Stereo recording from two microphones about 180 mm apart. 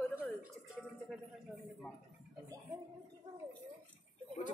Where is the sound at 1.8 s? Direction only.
10° left (ahead or behind).